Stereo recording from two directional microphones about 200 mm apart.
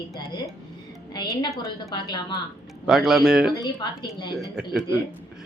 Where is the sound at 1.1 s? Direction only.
20° left (ahead or behind).